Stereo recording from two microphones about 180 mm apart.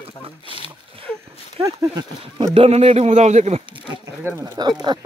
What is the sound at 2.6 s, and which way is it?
A man's voice, 35° right (ahead or behind).